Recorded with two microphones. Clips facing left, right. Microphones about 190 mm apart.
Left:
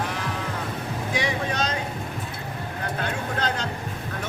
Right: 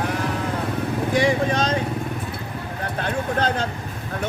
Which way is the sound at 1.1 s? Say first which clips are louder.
Right 7 dB; 50° right (ahead or behind).